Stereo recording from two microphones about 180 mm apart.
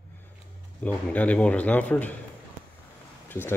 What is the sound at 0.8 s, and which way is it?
Speech, 10° left (ahead or behind).